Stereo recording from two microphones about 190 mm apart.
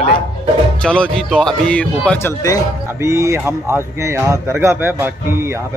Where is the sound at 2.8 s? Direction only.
15° right (ahead or behind).